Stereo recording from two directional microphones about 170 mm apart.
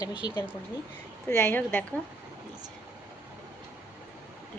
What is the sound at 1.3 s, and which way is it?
Speech, 15° left (ahead or behind).